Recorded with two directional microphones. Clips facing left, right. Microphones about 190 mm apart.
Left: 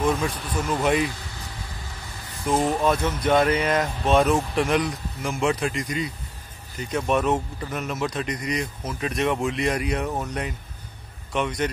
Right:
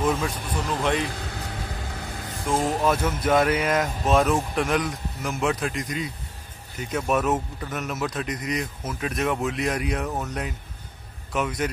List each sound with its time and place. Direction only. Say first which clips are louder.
0.0 s speech: left 1 dB; centre (ahead or behind)
1.0 s vehicle: left 1 dB; 60° right (ahead or behind)
2.6 s speech: even; 5° right (ahead or behind)
11.3 s speech: left 1 dB; 5° right (ahead or behind)